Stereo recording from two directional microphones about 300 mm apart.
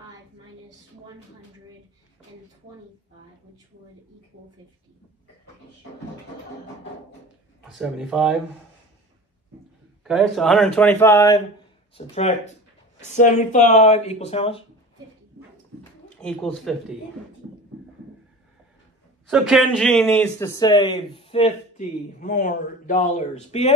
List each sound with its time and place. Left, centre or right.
7.7 s speech: centre
10.0 s speech: centre
16.2 s speech: centre
19.2 s speech: centre; by 23.7 s left